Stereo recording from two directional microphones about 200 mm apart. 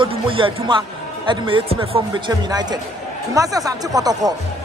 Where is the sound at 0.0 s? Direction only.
25° right (ahead or behind).